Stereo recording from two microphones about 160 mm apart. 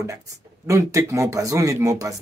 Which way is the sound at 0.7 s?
20° right (ahead or behind).